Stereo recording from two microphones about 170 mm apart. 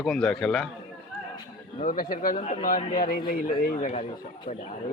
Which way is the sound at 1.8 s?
55° left (ahead or behind).